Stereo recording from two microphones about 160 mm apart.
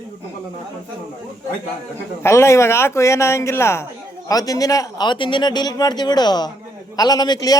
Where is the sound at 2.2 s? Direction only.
15° left (ahead or behind).